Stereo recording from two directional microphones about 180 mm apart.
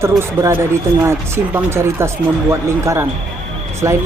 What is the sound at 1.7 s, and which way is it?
Speech, 15° right (ahead or behind).